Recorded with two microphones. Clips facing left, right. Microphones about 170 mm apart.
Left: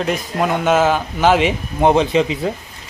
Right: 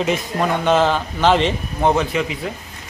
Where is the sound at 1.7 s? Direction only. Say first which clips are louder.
Left 5 dB; 20° left (ahead or behind).